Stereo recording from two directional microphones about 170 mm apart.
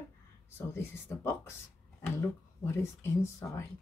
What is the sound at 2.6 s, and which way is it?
Speech, 15° left (ahead or behind).